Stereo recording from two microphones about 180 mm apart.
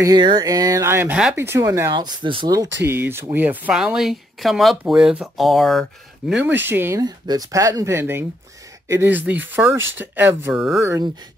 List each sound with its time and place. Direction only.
0.0 s speech: 25° right (ahead or behind); by 10.8 s 5° right (ahead or behind)
10.8 s speech: 15° right (ahead or behind)